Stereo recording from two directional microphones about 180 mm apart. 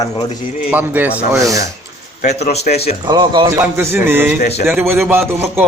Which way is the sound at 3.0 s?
25° right (ahead or behind).